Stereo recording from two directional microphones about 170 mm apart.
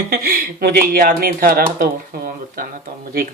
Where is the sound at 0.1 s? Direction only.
60° right (ahead or behind).